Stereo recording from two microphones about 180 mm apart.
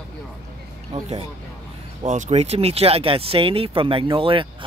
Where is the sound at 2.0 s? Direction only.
40° right (ahead or behind).